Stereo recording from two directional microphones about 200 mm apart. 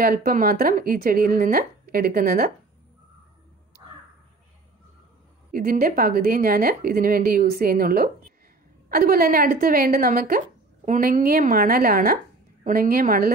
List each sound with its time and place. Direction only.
0.0 s a woman's voice: 45° right (ahead or behind)
5.5 s a woman's voice: 45° right (ahead or behind)